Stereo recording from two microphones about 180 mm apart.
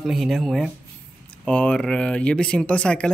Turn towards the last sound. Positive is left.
turn(degrees=5)  # may be behind; listen again after turning